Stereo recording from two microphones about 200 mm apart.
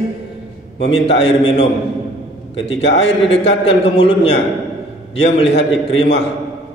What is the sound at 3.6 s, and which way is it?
Speech, 25° left (ahead or behind).